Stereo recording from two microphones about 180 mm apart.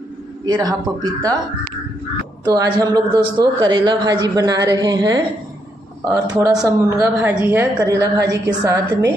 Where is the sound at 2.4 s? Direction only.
20° right (ahead or behind).